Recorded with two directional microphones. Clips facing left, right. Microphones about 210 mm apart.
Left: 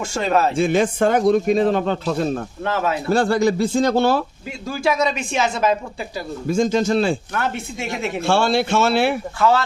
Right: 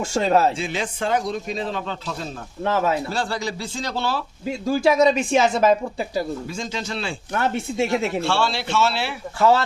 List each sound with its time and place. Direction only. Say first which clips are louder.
0.0 s speech: right 1 dB; 30° right (ahead or behind)
0.5 s speech: left 10 dB; 50° left (ahead or behind)
4.4 s speech: right 7 dB; 30° right (ahead or behind)
6.5 s speech: left 12 dB; 50° left (ahead or behind)
7.3 s speech: right 3 dB; 35° right (ahead or behind)
8.2 s speech: left 5 dB; 50° left (ahead or behind)